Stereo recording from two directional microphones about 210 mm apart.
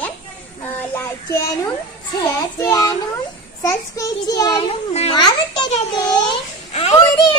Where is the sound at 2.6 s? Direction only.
15° left (ahead or behind).